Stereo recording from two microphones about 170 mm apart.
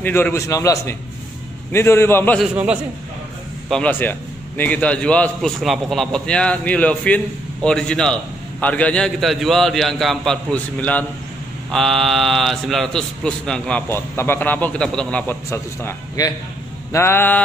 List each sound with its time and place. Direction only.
0.0 s a man's voice: 10° left (ahead or behind)
2.4 s a man's voice: 5° right (ahead or behind)
3.6 s a man's voice: 5° left (ahead or behind)